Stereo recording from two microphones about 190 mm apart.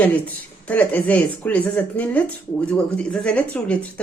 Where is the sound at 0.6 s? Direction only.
5° left (ahead or behind).